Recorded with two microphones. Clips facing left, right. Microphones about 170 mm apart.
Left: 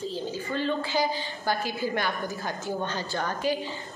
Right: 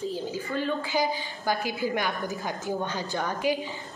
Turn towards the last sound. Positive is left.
turn(degrees=-15)  # may be behind; listen again after turning